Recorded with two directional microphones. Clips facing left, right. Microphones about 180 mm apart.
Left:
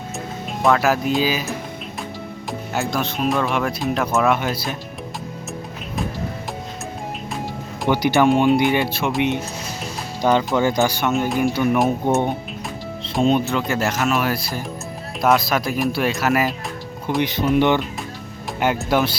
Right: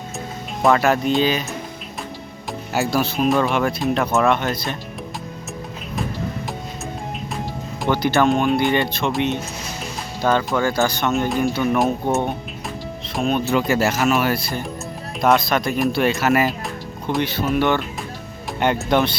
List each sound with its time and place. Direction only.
0.6 s speech: centre (ahead or behind)
7.9 s speech: 15° left (ahead or behind)
13.4 s speech: 5° right (ahead or behind)
17.2 s speech: 15° left (ahead or behind)
18.6 s speech: 5° left (ahead or behind)